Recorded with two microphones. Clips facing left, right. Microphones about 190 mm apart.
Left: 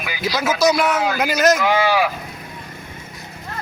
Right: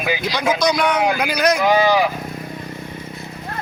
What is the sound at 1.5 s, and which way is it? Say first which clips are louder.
Speech: right 2 dB; 15° right (ahead or behind).